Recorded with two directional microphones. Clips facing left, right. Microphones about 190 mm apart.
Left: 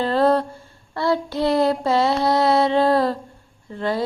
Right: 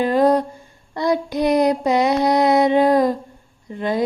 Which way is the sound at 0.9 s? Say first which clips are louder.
Right 2 dB; 15° right (ahead or behind).